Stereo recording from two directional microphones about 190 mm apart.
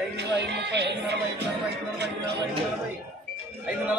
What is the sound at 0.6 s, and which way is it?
Speech, 65° right (ahead or behind).